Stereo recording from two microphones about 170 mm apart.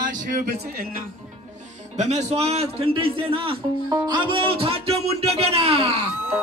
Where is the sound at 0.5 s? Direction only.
60° right (ahead or behind).